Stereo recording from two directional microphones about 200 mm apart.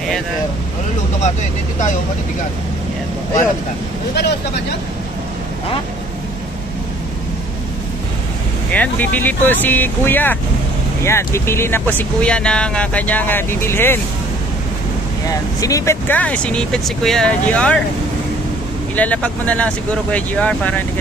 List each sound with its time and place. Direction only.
4.1 s speech: 55° left (ahead or behind)
8.7 s speech: 10° left (ahead or behind)
15.2 s speech: 15° left (ahead or behind)
18.9 s speech: 5° left (ahead or behind)